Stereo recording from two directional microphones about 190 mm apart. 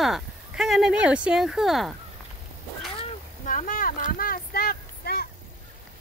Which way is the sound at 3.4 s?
45° left (ahead or behind).